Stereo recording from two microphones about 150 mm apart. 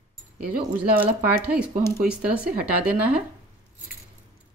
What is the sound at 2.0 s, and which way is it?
Speech, 5° right (ahead or behind).